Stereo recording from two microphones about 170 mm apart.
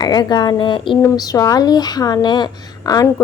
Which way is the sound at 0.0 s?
25° left (ahead or behind).